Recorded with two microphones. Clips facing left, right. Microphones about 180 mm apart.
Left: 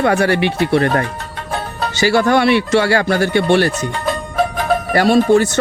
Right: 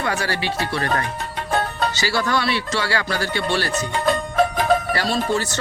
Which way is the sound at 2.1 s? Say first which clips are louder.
Left 11 dB; 55° left (ahead or behind).